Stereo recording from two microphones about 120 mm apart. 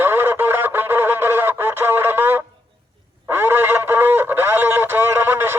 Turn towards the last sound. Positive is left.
turn(degrees=-20)  # may be behind; listen again after turning